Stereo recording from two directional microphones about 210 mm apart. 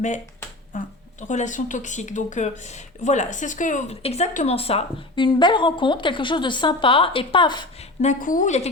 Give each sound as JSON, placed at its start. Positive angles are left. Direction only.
{"t": 0.7, "sound": "a woman's voice", "side_deg": 40}
{"t": 8.0, "sound": "a woman's voice", "side_deg": 40}